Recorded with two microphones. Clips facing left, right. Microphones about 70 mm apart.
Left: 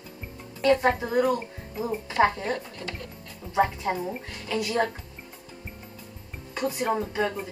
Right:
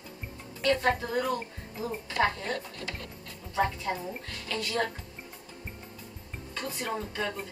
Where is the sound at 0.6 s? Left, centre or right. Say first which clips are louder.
Left 5 dB; centre.